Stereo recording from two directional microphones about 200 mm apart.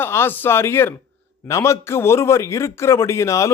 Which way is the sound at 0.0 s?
10° left (ahead or behind).